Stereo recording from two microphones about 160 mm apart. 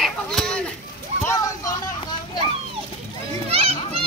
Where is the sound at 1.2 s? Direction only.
20° left (ahead or behind).